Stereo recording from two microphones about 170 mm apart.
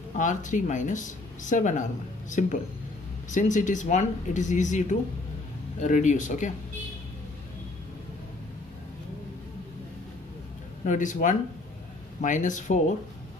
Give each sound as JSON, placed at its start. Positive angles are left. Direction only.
{"t": 0.2, "sound": "speech", "side_deg": 45}
{"t": 10.8, "sound": "speech", "side_deg": 45}